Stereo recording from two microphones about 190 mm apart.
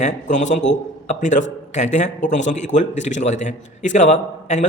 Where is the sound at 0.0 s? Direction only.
40° left (ahead or behind).